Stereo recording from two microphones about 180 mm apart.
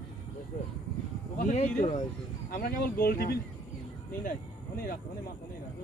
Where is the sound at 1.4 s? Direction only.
45° left (ahead or behind).